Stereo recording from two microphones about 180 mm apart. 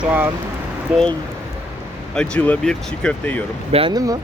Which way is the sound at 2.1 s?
5° left (ahead or behind).